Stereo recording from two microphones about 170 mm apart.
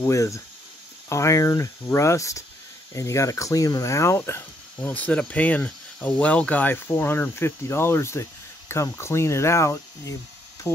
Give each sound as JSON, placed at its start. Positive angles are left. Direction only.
{"t": 0.0, "sound": "speech", "side_deg": 20}